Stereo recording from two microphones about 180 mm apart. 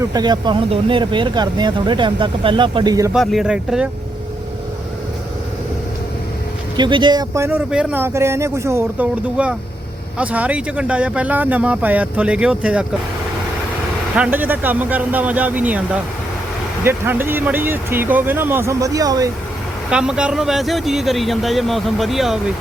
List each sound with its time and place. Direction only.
0.0 s speech: 20° right (ahead or behind)
3.1 s speech: 5° right (ahead or behind)
6.7 s speech: 25° right (ahead or behind); by 12.8 s 5° right (ahead or behind)
14.2 s speech: 10° right (ahead or behind)
16.8 s speech: 10° right (ahead or behind)
19.9 s speech: 5° right (ahead or behind)